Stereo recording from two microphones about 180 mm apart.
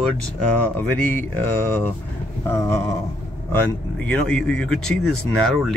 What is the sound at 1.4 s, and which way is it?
Speech, 10° left (ahead or behind).